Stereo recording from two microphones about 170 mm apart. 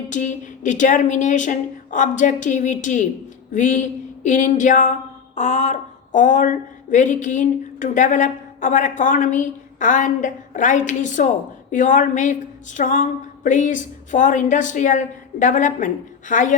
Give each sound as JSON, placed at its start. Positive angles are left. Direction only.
{"t": 0.1, "sound": "speech", "side_deg": 45}
{"t": 3.5, "sound": "a sound", "side_deg": 45}
{"t": 11.7, "sound": "speech", "side_deg": 50}